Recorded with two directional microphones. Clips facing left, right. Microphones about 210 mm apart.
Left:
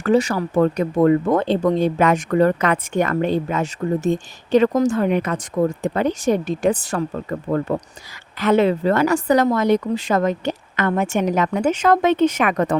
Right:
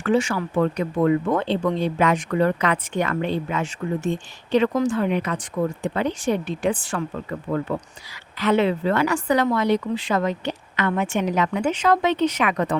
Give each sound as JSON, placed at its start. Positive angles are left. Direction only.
{"t": 0.0, "sound": "speech", "side_deg": 40}